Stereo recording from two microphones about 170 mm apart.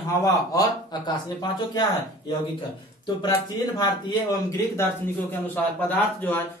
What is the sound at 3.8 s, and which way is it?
A man's voice, 20° left (ahead or behind).